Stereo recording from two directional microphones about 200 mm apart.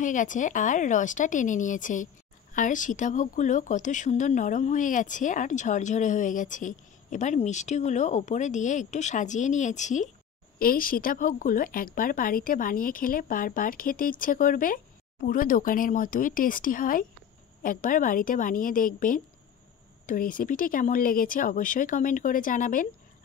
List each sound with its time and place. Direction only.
0.0 s a woman's voice: 40° left (ahead or behind)